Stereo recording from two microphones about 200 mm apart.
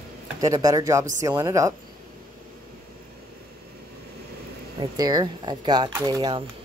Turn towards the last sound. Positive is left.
turn(degrees=-20)  # may be behind; listen again after turning